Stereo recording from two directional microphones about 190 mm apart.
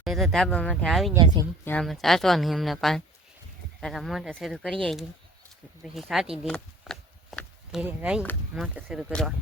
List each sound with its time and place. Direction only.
0.0 s speech: centre (ahead or behind)
1.1 s speech: 20° right (ahead or behind)
1.6 s speech: 5° left (ahead or behind)
6.4 s a sound: centre (ahead or behind)
8.2 s speech: 5° left (ahead or behind)